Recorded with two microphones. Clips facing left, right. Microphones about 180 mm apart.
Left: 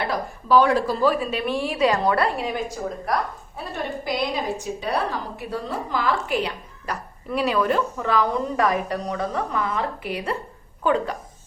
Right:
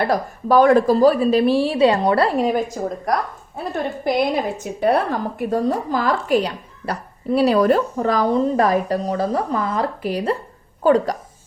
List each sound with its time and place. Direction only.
0.0 s a woman's voice: 45° right (ahead or behind); by 2.5 s 30° right (ahead or behind)
2.8 s speech: 50° right (ahead or behind)
4.0 s a woman's voice: 55° right (ahead or behind)